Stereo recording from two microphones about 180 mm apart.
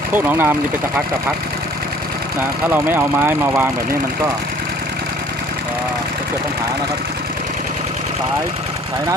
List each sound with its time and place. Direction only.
0.1 s speech: 10° right (ahead or behind)
2.6 s speech: 10° right (ahead or behind)